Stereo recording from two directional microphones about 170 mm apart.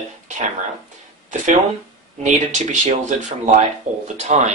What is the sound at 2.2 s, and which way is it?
Speech, 45° right (ahead or behind).